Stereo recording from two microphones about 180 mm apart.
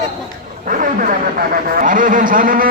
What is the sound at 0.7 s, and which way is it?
A man's voice, 50° right (ahead or behind).